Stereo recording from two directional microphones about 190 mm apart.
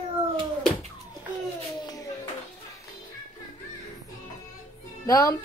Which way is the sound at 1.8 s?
20° left (ahead or behind).